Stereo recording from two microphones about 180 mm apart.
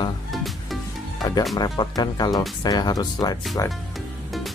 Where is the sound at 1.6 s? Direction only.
25° left (ahead or behind).